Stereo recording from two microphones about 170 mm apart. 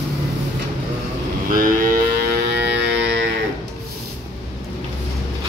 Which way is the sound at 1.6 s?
60° right (ahead or behind).